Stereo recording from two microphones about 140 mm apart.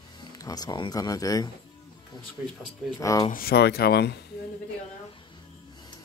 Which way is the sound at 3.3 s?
90° left.